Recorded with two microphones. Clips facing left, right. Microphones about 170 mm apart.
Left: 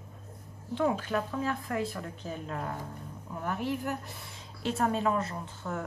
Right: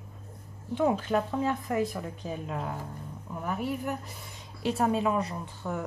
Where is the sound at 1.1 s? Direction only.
20° right (ahead or behind); by 3.9 s centre (ahead or behind).